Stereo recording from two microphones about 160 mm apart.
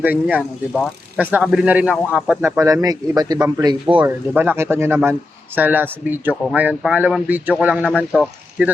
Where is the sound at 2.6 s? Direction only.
20° right (ahead or behind).